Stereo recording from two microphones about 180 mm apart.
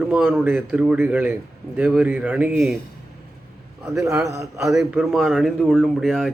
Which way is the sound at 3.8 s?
15° right (ahead or behind).